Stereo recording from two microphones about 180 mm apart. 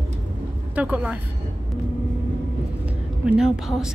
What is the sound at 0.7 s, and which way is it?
Speech, 10° right (ahead or behind).